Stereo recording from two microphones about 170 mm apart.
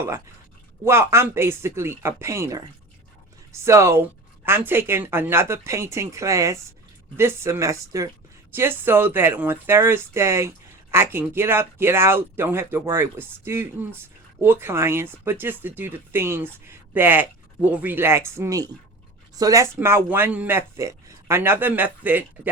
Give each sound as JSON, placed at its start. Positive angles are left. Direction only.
{"t": 0.9, "sound": "speech", "side_deg": -15}